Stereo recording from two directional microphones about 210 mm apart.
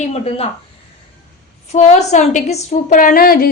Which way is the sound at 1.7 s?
35° left (ahead or behind).